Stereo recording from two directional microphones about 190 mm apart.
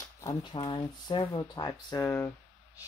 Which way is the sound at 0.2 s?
20° left (ahead or behind).